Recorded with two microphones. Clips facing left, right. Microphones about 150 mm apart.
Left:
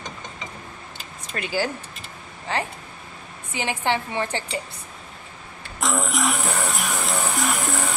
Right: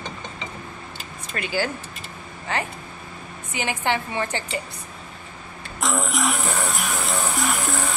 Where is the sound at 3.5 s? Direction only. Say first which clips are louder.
Even; 25° left (ahead or behind).